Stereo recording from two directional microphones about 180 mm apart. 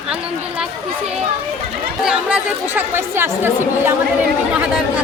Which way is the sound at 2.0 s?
5° right (ahead or behind).